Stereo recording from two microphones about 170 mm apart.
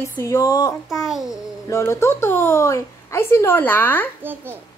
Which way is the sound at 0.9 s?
Centre (ahead or behind).